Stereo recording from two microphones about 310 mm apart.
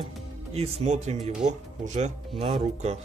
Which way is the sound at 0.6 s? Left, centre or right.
Right.